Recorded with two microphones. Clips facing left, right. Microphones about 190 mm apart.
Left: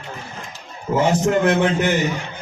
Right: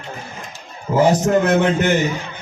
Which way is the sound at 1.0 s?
40° right (ahead or behind).